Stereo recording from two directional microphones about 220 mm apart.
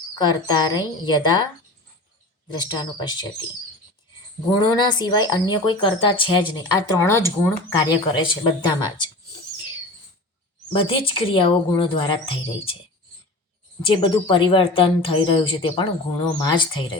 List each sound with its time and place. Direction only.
0.2 s speech: 20° left (ahead or behind)
2.5 s speech: 20° left (ahead or behind)
4.6 s speech: 20° left (ahead or behind)
10.7 s speech: 25° left (ahead or behind)
13.8 s speech: 20° left (ahead or behind)